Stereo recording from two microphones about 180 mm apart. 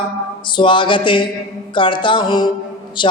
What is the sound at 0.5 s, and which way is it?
Mantra, 25° left (ahead or behind).